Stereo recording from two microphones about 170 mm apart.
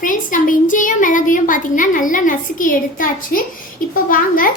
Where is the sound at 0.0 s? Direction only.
50° left (ahead or behind).